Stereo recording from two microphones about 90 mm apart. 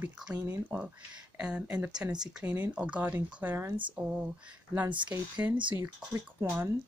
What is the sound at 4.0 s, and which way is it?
Speech, 10° right (ahead or behind).